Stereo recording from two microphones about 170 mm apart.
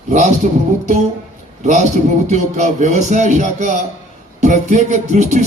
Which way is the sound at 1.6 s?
45° right (ahead or behind).